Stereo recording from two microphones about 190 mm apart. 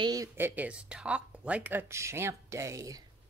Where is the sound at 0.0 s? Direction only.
20° right (ahead or behind).